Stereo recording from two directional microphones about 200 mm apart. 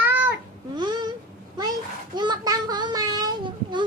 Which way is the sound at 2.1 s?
20° right (ahead or behind).